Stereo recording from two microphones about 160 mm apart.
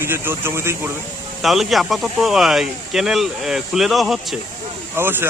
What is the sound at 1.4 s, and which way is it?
Speech, centre (ahead or behind).